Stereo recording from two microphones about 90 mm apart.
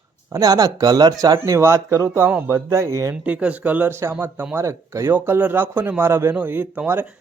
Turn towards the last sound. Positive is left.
turn(degrees=-20)  # may be behind; listen again after turning